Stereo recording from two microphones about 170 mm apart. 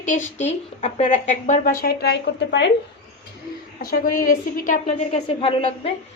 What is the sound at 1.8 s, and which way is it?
Speech, 70° left (ahead or behind).